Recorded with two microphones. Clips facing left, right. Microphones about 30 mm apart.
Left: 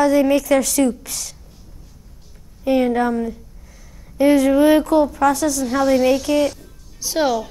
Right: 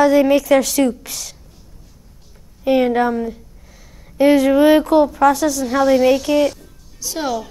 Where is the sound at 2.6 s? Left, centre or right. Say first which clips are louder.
Right 2 dB; right.